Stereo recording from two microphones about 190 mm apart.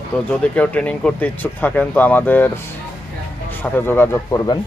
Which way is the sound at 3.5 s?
10° left (ahead or behind).